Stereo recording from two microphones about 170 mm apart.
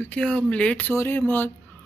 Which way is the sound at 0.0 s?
5° left (ahead or behind).